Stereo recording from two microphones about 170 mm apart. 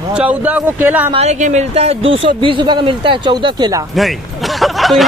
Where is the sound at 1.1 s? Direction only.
40° right (ahead or behind); by 3.8 s 25° right (ahead or behind).